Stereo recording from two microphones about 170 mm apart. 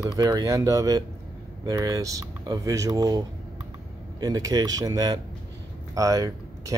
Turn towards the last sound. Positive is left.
turn(degrees=-20)  # may be behind; listen again after turning